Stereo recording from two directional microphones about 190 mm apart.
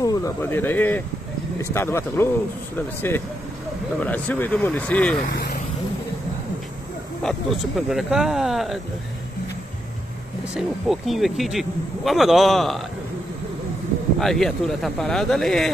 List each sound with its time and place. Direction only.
0.0 s speech: 20° left (ahead or behind)
4.0 s speech: 10° left (ahead or behind)
5.3 s vehicle: 60° left (ahead or behind)
7.2 s speech: centre (ahead or behind)
10.5 s speech: centre (ahead or behind)
14.2 s speech: centre (ahead or behind)